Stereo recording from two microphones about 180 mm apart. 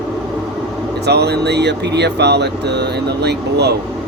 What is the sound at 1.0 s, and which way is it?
Speech, 65° right (ahead or behind).